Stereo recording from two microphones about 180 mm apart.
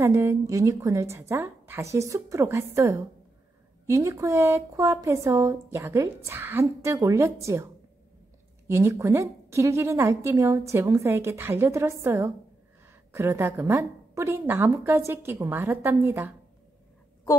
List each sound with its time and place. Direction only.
0.0 s speech: 15° right (ahead or behind)
8.6 s speech: 15° right (ahead or behind)